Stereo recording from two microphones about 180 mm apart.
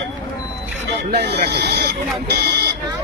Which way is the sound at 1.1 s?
65° right (ahead or behind).